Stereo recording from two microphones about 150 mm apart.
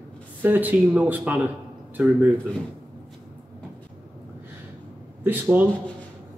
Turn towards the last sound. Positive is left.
turn(degrees=-10)  # may be behind; listen again after turning